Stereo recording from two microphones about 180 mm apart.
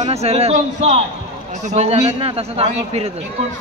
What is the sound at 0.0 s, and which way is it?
A man's voice, 35° right (ahead or behind).